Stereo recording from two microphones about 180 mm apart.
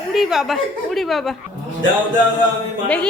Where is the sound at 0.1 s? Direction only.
Centre (ahead or behind).